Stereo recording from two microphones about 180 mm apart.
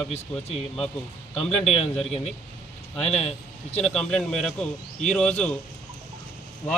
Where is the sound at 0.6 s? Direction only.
5° left (ahead or behind).